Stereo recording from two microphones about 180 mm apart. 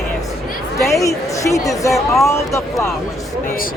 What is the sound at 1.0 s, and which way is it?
Speech, 15° left (ahead or behind).